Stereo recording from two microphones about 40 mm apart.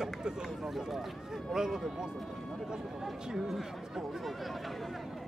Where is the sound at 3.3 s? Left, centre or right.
Centre.